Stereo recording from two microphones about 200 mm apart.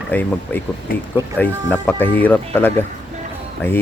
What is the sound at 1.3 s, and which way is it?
Speech, 10° left (ahead or behind).